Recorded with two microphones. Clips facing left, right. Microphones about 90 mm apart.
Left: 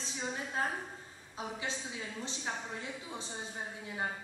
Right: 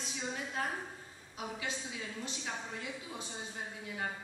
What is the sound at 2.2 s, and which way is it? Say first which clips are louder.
A woman's voice: left 2 dB; 30° left (ahead or behind).